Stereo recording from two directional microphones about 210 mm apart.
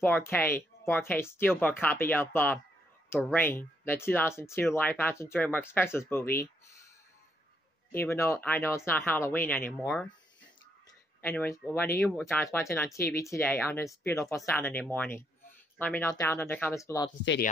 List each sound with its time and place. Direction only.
0.0 s speech: 10° left (ahead or behind)
8.0 s speech: 10° left (ahead or behind)
11.1 s speech: 10° left (ahead or behind)